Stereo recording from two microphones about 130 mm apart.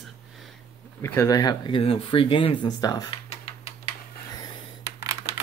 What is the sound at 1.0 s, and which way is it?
Speech, 20° left (ahead or behind).